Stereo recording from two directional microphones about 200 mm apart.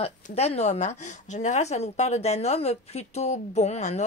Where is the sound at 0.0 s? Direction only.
30° left (ahead or behind).